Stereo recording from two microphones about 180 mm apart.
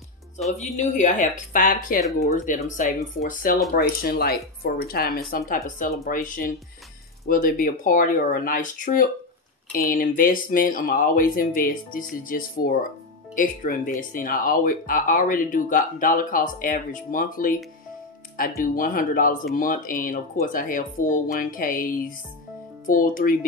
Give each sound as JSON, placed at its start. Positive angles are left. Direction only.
{"t": 0.7, "sound": "speech", "side_deg": 45}
{"t": 18.6, "sound": "speech", "side_deg": 50}